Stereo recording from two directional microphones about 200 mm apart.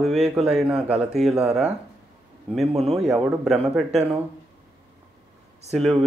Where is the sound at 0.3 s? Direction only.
5° right (ahead or behind).